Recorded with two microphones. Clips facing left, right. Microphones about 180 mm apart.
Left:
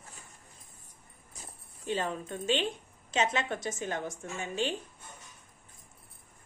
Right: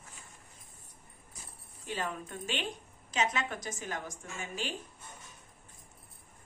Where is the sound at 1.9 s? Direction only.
25° left (ahead or behind).